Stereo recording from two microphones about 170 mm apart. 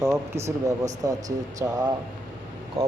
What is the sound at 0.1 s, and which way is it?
Speech, 15° right (ahead or behind).